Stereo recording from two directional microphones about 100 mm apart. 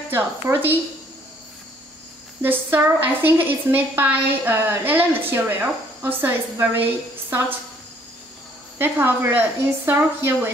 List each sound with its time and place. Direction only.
0.1 s a woman's voice: 20° right (ahead or behind)
2.4 s a woman's voice: 20° right (ahead or behind)
8.7 s a woman's voice: 20° right (ahead or behind)